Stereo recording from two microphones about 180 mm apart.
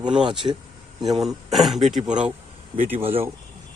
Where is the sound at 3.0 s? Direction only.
30° right (ahead or behind).